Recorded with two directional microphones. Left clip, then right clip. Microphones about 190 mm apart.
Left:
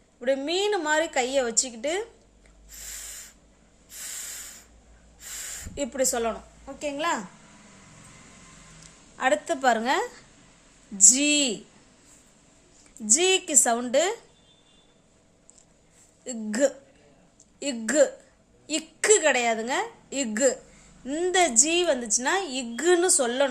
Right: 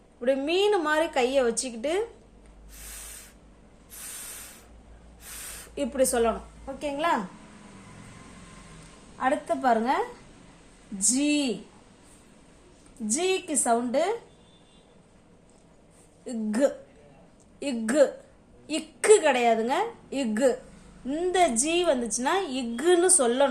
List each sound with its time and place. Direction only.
0.2 s a woman's voice: 20° left (ahead or behind)
5.2 s a sound: 15° left (ahead or behind)
6.7 s a woman's voice: 20° left (ahead or behind)
9.1 s a woman's voice: 50° left (ahead or behind)
13.1 s a woman's voice: 40° left (ahead or behind)
16.2 s a woman's voice: 35° left (ahead or behind)